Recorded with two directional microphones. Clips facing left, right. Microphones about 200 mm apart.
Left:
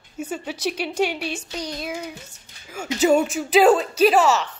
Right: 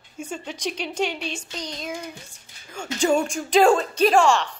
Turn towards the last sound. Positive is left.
turn(degrees=5)  # may be behind; listen again after turning